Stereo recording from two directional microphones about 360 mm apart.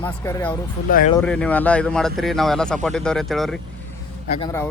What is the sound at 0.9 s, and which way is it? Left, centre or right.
Speech, left.